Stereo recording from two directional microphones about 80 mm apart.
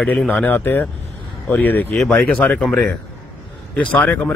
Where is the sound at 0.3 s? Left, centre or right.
Centre.